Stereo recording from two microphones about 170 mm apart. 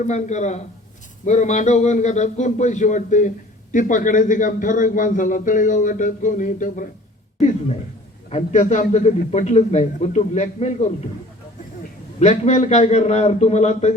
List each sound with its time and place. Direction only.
0.1 s a man's voice: 45° left (ahead or behind)
12.2 s a man's voice: 45° left (ahead or behind)